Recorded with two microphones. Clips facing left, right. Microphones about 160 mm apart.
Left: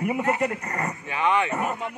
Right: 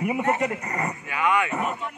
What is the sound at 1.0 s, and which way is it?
Speech, 25° left (ahead or behind).